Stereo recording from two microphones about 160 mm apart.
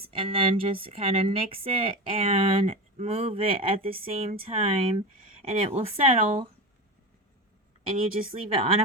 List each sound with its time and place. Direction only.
0.0 s speech: 35° right (ahead or behind)
7.9 s speech: 35° right (ahead or behind)